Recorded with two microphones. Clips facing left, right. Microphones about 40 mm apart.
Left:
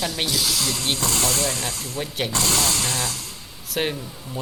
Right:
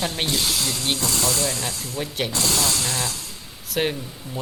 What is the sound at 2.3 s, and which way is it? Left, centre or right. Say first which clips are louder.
Speech: left 2 dB; left.